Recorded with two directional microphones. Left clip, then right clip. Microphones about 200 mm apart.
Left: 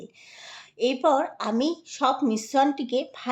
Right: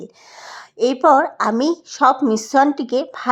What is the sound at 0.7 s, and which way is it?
Speech, 25° right (ahead or behind).